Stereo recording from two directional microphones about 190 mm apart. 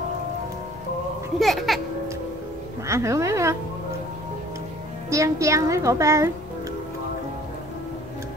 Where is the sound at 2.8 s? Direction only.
15° right (ahead or behind).